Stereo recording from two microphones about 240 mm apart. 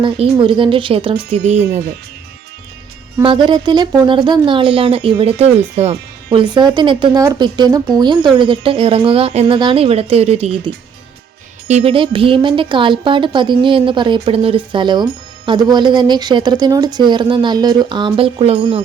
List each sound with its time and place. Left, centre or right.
0.0 s speech: right
3.2 s speech: centre
11.7 s speech: right